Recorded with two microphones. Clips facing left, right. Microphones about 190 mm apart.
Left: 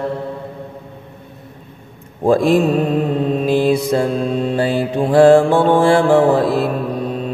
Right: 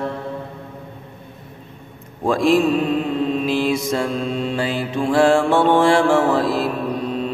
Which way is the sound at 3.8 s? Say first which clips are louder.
Left 5 dB; 35° left (ahead or behind).